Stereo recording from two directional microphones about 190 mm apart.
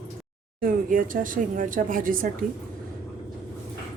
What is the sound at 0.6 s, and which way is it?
A woman's voice, 45° right (ahead or behind).